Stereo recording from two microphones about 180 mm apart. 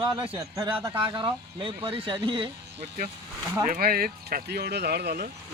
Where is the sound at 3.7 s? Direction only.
55° right (ahead or behind).